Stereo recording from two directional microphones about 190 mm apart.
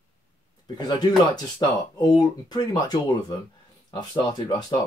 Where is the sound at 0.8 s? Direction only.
20° left (ahead or behind).